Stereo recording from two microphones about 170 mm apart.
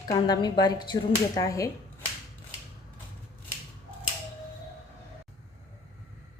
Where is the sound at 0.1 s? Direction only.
25° left (ahead or behind).